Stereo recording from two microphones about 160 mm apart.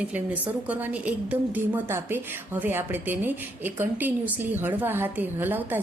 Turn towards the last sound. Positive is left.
turn(degrees=-10)  # may be behind; listen again after turning